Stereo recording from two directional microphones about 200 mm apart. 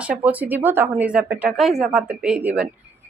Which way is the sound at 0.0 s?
5° right (ahead or behind).